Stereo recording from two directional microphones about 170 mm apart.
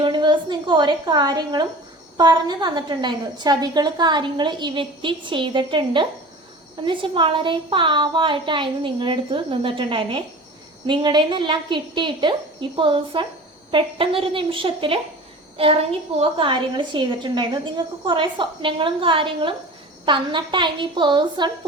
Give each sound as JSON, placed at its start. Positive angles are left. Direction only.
{"t": 0.0, "sound": "a woman's voice", "side_deg": -25}